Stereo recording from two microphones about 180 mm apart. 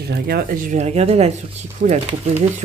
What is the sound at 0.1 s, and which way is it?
Speech, 60° right (ahead or behind).